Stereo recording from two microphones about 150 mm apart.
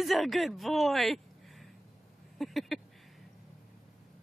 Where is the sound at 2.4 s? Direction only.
Centre (ahead or behind).